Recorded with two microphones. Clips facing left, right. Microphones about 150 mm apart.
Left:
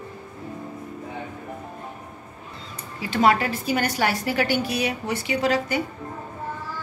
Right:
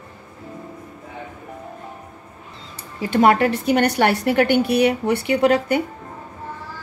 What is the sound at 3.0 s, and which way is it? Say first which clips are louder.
A woman's voice: right 5 dB; 55° right (ahead or behind).